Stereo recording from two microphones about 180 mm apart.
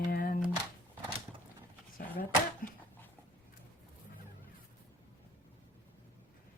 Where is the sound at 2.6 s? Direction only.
50° left (ahead or behind).